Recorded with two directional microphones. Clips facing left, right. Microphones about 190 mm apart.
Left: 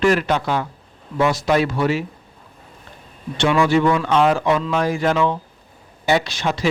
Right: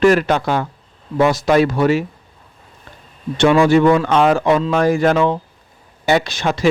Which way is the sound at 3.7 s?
45° right (ahead or behind).